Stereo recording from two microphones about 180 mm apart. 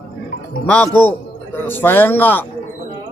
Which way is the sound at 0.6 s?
10° left (ahead or behind).